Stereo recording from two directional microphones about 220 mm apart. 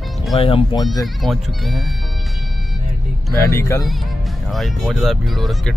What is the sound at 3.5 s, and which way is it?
Speech, 15° left (ahead or behind).